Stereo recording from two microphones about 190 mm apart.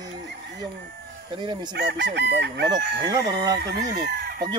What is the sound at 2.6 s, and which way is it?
Chicken, 20° right (ahead or behind).